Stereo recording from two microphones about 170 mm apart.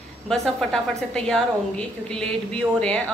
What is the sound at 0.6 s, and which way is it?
A woman's voice, 5° left (ahead or behind).